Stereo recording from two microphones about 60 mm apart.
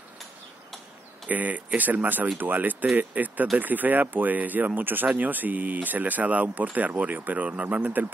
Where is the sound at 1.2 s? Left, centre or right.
Right.